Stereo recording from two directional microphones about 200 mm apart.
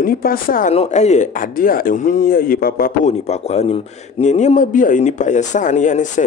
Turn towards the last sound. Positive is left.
turn(degrees=40)  # may be behind; listen again after turning